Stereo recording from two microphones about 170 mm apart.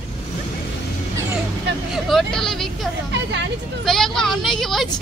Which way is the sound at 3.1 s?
90° right.